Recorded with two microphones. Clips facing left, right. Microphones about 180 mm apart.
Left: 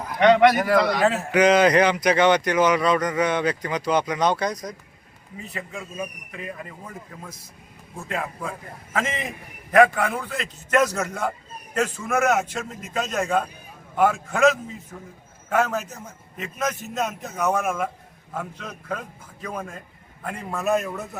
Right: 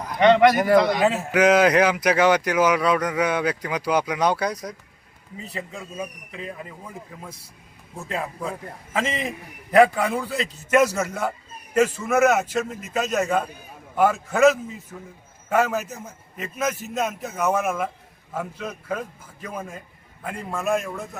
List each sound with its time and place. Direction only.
0.0 s a man's voice: centre (ahead or behind)
6.0 s a man's voice: 20° right (ahead or behind)
9.8 s a man's voice: 10° right (ahead or behind); by 21.2 s 5° left (ahead or behind)